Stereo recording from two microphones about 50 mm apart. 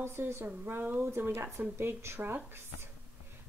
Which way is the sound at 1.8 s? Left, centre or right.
Right.